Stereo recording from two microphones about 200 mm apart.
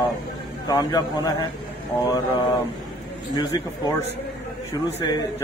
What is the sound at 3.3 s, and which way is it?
Speech, 20° left (ahead or behind).